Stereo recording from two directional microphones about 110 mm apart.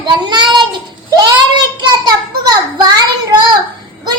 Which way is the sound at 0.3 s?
40° right (ahead or behind).